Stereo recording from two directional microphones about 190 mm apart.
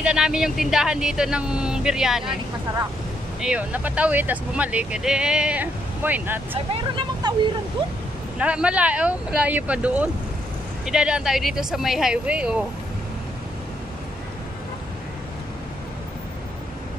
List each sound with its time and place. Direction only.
0.0 s speech: 5° right (ahead or behind)
3.3 s speech: 5° right (ahead or behind)
6.5 s speech: 30° right (ahead or behind)
8.4 s speech: 5° right (ahead or behind)